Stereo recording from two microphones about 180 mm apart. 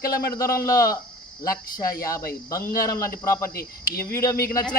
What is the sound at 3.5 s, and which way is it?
Speech, 55° left (ahead or behind).